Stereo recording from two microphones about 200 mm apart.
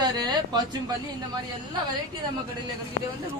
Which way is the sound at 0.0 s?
20° right (ahead or behind).